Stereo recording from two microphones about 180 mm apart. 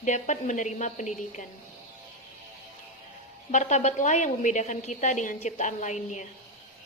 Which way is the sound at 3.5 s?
40° left (ahead or behind).